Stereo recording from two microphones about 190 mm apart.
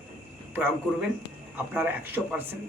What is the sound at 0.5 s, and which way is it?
A man's voice, 10° right (ahead or behind).